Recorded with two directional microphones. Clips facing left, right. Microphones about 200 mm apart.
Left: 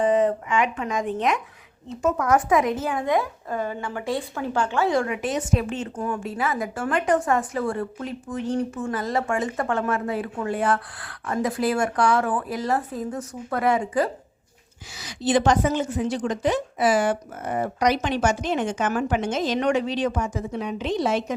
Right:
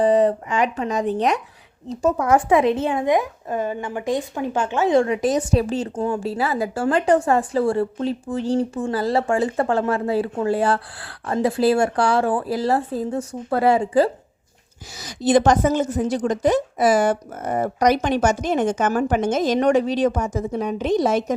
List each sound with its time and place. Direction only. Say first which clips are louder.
0.0 s a woman's voice: right 3 dB; 35° right (ahead or behind)
14.9 s a woman's voice: right 5 dB; 40° right (ahead or behind)